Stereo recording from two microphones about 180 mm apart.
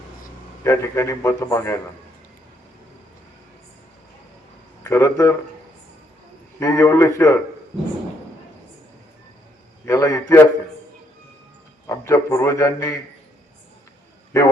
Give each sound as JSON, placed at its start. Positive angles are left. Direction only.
{"t": 0.6, "sound": "a man's voice", "side_deg": 15}
{"t": 4.8, "sound": "a man's voice", "side_deg": 15}
{"t": 6.6, "sound": "a man's voice", "side_deg": 15}
{"t": 9.8, "sound": "a man's voice", "side_deg": 20}
{"t": 11.9, "sound": "a man's voice", "side_deg": 15}
{"t": 14.3, "sound": "a man's voice", "side_deg": 15}